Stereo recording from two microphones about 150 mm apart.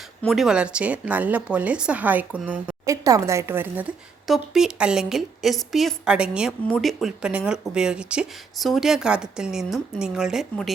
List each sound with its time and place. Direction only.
0.2 s speech: centre (ahead or behind)
2.8 s speech: 20° right (ahead or behind); by 10.7 s 5° right (ahead or behind)